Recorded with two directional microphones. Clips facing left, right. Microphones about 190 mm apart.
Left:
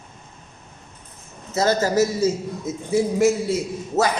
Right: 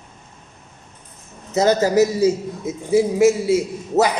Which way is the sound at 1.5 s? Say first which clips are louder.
Right 4 dB; 15° right (ahead or behind).